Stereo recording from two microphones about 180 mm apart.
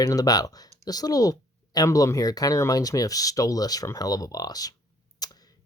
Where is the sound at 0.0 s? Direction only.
20° left (ahead or behind).